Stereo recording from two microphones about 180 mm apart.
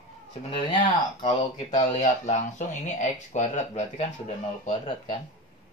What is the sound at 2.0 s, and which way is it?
Speech, 40° left (ahead or behind).